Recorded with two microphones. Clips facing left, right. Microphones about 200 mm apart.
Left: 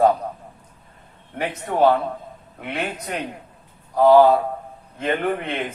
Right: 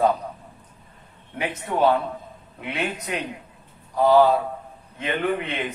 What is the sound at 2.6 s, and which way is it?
Speech, 45° left (ahead or behind).